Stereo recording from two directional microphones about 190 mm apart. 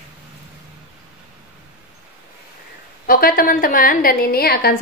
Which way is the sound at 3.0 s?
50° left (ahead or behind).